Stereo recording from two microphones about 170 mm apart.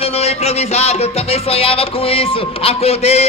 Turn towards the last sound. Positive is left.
turn(degrees=35)  # may be behind; listen again after turning